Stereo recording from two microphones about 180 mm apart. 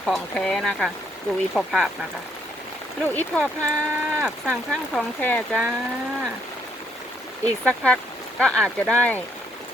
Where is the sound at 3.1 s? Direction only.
10° left (ahead or behind).